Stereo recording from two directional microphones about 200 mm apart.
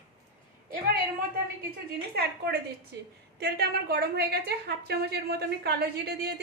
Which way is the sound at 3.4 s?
55° right (ahead or behind).